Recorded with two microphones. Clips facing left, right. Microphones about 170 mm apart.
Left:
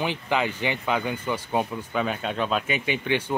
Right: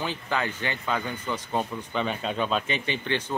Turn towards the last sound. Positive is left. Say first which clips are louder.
# left 3 dB
turn(degrees=10)  # may be behind; listen again after turning